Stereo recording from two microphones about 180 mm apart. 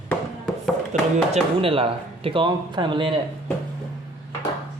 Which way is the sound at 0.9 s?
40° right (ahead or behind).